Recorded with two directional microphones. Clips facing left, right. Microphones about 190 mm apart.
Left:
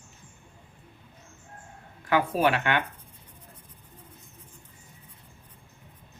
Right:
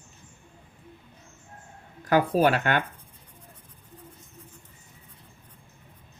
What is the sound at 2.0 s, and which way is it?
Speech, 40° right (ahead or behind).